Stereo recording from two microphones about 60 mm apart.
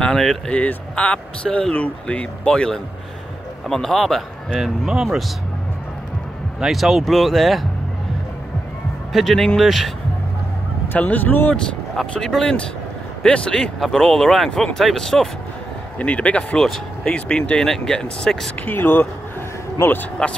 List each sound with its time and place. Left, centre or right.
0.0 s a sound: centre
0.5 s speech: left; by 5.2 s centre
6.6 s speech: centre
9.1 s speech: centre
10.9 s speech: left
12.1 s speech: centre
16.0 s speech: left
16.5 s speech: centre
17.1 s speech: centre
18.6 s speech: left